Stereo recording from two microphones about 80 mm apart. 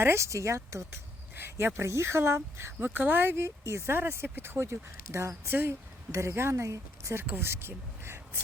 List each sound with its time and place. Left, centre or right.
0.0 s speech: right